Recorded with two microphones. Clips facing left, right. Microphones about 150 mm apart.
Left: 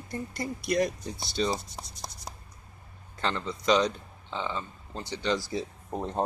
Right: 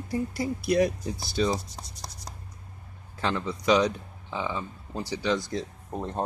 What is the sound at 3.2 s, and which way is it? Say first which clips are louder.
Speech: right 2 dB; 5° right (ahead or behind).